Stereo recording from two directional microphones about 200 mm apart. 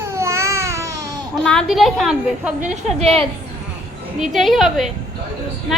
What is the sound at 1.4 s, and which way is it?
A woman's voice, 5° left (ahead or behind).